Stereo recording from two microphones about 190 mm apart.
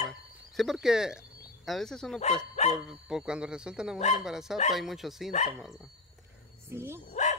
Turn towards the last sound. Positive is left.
turn(degrees=40)  # may be behind; listen again after turning